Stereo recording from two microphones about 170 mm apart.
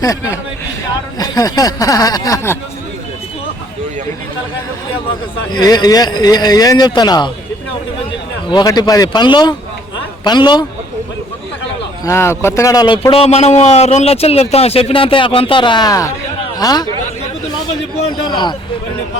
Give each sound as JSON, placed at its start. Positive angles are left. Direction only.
{"t": 0.0, "sound": "speech", "side_deg": 20}
{"t": 5.5, "sound": "speech", "side_deg": 25}
{"t": 8.4, "sound": "speech", "side_deg": 25}
{"t": 12.0, "sound": "a man's voice", "side_deg": 15}
{"t": 16.4, "sound": "a sound", "side_deg": 25}
{"t": 18.3, "sound": "speech", "side_deg": 25}